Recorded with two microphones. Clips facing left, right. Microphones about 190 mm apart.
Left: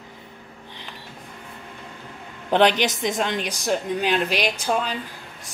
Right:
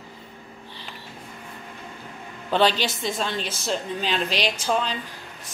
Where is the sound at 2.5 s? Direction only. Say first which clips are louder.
Left 3 dB; 20° left (ahead or behind).